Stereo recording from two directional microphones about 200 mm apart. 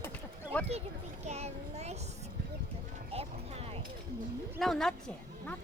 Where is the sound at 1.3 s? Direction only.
35° right (ahead or behind).